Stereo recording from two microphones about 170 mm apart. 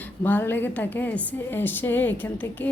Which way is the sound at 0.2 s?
10° left (ahead or behind).